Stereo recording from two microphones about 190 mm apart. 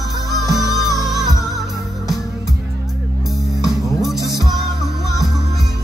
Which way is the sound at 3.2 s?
Centre (ahead or behind).